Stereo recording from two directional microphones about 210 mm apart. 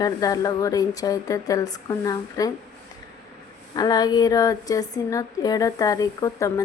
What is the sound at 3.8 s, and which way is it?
A woman's voice, 20° left (ahead or behind).